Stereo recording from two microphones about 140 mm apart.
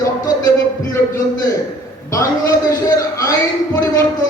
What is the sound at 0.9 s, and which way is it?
Heart sounds, 20° left (ahead or behind).